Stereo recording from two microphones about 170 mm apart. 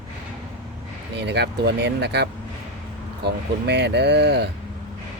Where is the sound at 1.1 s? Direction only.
85° right.